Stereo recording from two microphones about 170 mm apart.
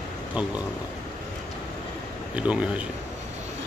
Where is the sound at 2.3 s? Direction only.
5° right (ahead or behind).